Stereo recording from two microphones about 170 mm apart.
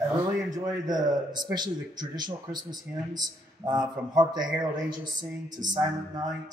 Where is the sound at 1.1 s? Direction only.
25° right (ahead or behind).